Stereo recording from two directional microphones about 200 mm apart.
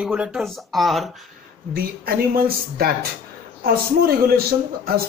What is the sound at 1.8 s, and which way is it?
Speech, 50° right (ahead or behind).